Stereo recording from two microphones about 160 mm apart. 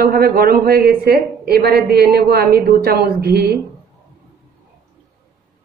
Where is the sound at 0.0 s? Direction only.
70° right (ahead or behind).